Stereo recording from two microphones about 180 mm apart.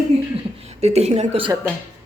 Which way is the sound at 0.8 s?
35° right (ahead or behind).